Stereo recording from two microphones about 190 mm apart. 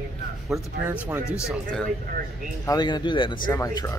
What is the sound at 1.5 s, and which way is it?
Speech, 5° left (ahead or behind).